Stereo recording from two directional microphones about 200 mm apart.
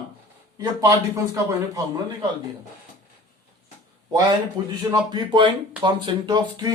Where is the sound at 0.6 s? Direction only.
15° right (ahead or behind).